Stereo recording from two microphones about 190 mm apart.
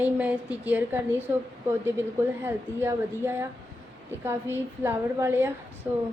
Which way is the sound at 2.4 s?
10° right (ahead or behind).